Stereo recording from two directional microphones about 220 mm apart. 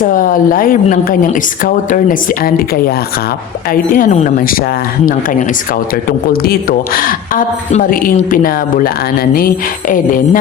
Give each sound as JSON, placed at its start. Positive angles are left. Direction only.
{"t": 0.0, "sound": "a man's voice", "side_deg": 40}